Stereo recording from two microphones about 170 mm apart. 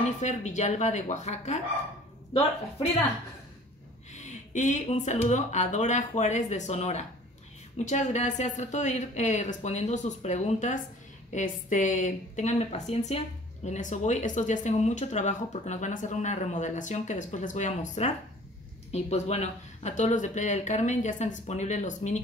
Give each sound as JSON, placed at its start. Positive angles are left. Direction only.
{"t": 0.0, "sound": "speech", "side_deg": 45}
{"t": 4.1, "sound": "speech", "side_deg": 45}